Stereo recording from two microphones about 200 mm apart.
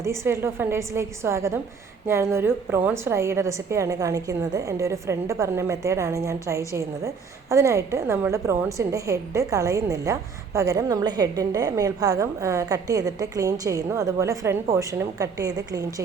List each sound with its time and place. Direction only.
0.0 s a woman's voice: 15° right (ahead or behind)